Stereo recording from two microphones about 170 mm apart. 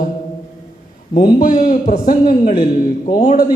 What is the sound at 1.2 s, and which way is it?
A man's voice, 55° left (ahead or behind).